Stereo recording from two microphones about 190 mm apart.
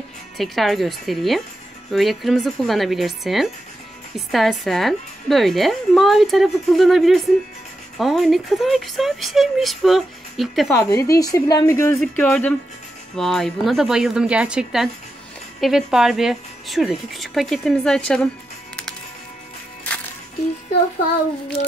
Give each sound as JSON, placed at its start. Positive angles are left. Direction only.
{"t": 0.4, "sound": "speech", "side_deg": 0}
{"t": 10.7, "sound": "a woman's voice", "side_deg": 15}